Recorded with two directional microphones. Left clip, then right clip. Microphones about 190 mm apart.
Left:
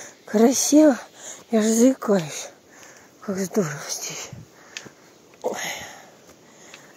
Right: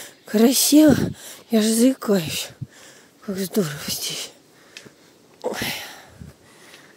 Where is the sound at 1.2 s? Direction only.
20° right (ahead or behind).